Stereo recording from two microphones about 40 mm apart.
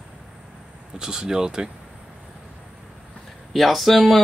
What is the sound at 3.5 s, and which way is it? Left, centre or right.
Speech, centre.